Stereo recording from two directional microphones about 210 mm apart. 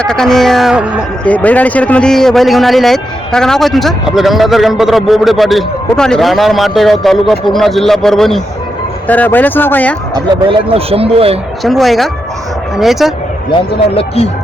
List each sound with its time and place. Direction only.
0.0 s a man's voice: 5° left (ahead or behind)
1.3 s a man's voice: 5° left (ahead or behind)
10.2 s speech: 25° right (ahead or behind)
11.6 s a man's voice: centre (ahead or behind)
13.5 s speech: 25° left (ahead or behind)